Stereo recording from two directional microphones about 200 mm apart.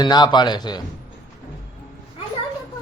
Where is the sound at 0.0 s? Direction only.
20° left (ahead or behind).